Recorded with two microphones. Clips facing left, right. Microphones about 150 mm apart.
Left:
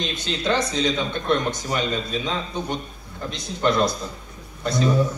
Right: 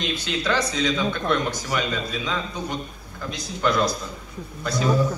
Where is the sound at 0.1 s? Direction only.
20° left (ahead or behind).